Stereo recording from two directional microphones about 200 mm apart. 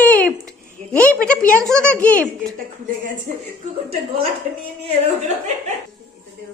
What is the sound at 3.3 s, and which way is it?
Speech, 35° right (ahead or behind).